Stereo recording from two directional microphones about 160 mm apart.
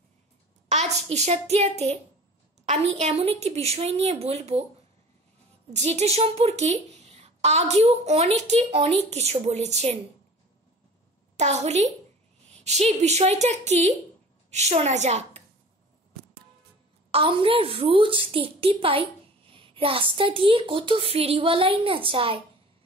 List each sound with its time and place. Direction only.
0.7 s a child's voice: 45° right (ahead or behind)
5.7 s a woman's voice: 45° right (ahead or behind)
11.3 s a woman's voice: 45° right (ahead or behind)
17.1 s a woman's voice: 35° right (ahead or behind)